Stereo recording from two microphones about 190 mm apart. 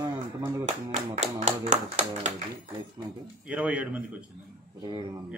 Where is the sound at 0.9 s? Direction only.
35° right (ahead or behind).